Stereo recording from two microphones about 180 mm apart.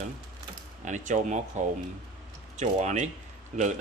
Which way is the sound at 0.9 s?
45° right (ahead or behind).